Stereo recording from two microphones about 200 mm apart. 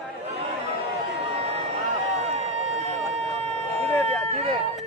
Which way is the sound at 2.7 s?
30° right (ahead or behind).